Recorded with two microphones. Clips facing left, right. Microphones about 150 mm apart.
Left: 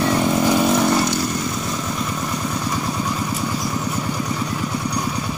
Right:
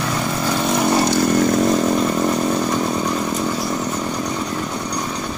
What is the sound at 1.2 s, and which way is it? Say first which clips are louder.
Chainsaw: right 9 dB; 55° right (ahead or behind).